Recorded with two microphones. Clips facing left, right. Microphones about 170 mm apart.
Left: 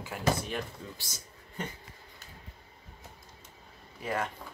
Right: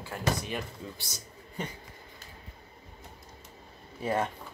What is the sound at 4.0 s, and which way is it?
Speech, 30° right (ahead or behind).